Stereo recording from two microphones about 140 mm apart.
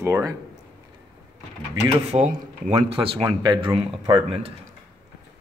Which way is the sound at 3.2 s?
30° right (ahead or behind).